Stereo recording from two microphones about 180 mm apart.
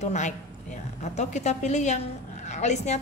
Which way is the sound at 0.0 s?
40° left (ahead or behind).